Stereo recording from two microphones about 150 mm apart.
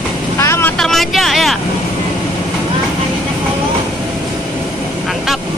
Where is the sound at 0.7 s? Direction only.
Centre (ahead or behind).